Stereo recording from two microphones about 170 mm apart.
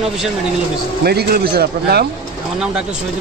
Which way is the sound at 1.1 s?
65° right (ahead or behind).